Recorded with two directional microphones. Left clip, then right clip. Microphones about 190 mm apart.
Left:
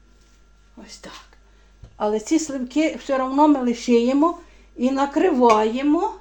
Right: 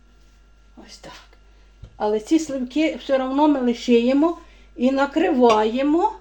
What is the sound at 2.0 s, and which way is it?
Speech, 15° left (ahead or behind).